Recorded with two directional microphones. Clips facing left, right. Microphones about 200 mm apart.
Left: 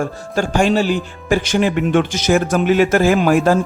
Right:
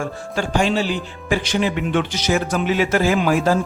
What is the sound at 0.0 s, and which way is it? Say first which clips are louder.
Speech: left 4 dB; 45° left (ahead or behind).